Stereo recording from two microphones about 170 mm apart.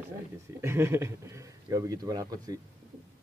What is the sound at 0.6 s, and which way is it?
A woman's voice, 15° right (ahead or behind).